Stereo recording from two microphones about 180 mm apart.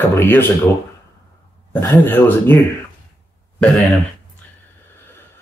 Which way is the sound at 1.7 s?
15° left (ahead or behind).